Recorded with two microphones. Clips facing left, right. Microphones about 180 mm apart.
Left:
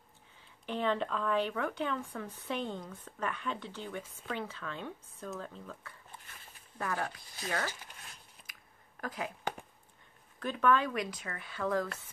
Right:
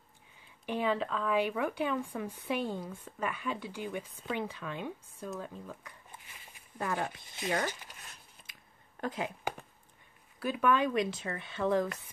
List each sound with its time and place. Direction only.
0.7 s speech: 10° right (ahead or behind)
5.4 s a sound: 10° right (ahead or behind)
6.8 s speech: 20° right (ahead or behind)
8.4 s a sound: centre (ahead or behind)
9.0 s speech: 25° right (ahead or behind)
10.4 s speech: 10° right (ahead or behind)